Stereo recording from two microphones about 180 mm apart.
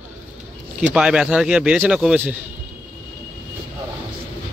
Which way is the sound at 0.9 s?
5° right (ahead or behind).